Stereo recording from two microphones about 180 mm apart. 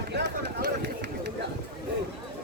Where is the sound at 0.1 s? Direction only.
70° right (ahead or behind).